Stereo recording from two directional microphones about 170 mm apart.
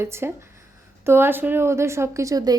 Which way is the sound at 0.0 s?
15° right (ahead or behind).